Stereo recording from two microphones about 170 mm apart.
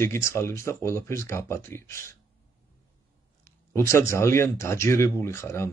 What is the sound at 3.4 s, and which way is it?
Speech, 15° left (ahead or behind).